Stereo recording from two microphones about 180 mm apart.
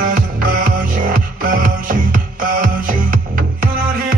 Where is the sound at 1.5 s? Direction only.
50° right (ahead or behind).